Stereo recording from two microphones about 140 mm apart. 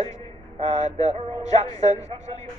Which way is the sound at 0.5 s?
55° right (ahead or behind).